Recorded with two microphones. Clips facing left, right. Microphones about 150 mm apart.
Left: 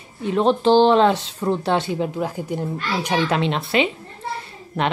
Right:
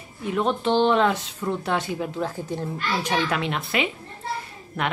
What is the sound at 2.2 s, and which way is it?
A woman's voice, 15° left (ahead or behind).